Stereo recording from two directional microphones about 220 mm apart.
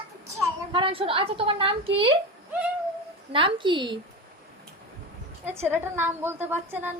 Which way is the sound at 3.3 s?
20° right (ahead or behind).